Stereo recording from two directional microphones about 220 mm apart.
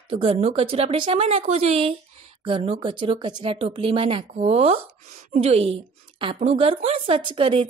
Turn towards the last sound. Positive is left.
turn(degrees=-25)  # may be behind; listen again after turning